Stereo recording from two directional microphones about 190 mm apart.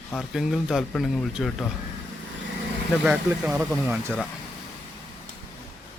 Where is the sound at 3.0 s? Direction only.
10° right (ahead or behind).